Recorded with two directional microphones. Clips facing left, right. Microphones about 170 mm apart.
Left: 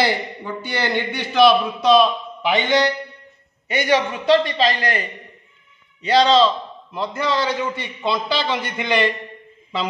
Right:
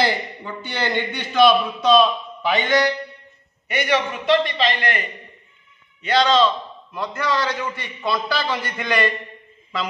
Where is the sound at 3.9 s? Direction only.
35° left (ahead or behind).